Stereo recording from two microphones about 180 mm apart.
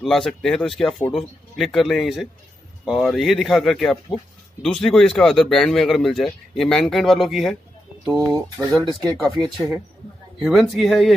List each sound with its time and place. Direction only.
0.0 s a man's voice: centre (ahead or behind)
8.1 s speech: 20° right (ahead or behind)
8.5 s a man's voice: centre (ahead or behind)